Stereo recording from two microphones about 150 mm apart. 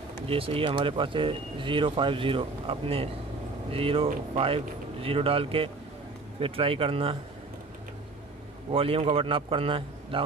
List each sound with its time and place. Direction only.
0.3 s speech: 40° right (ahead or behind)
8.7 s speech: 40° right (ahead or behind)